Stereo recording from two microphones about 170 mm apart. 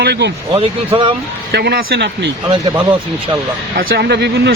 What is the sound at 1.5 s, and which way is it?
Speech, 70° right (ahead or behind).